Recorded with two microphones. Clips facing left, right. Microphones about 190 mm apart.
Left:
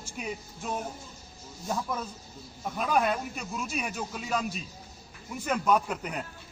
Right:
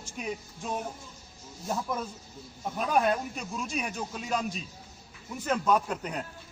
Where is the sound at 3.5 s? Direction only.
5° left (ahead or behind).